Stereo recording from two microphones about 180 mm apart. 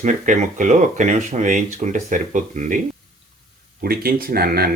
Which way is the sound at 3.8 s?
55° right (ahead or behind).